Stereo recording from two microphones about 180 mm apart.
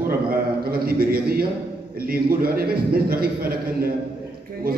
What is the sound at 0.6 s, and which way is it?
A man's voice, 55° right (ahead or behind).